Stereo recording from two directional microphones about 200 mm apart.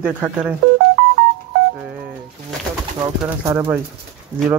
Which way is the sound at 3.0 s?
15° right (ahead or behind).